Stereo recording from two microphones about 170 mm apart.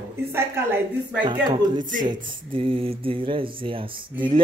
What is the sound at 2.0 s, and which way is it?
Speech, 30° right (ahead or behind).